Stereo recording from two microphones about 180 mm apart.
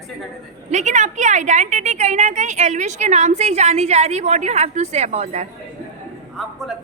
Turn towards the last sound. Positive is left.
turn(degrees=0)  # may be behind; listen again after turning